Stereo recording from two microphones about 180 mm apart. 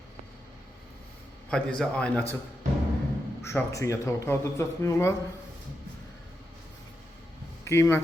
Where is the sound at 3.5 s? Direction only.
15° left (ahead or behind).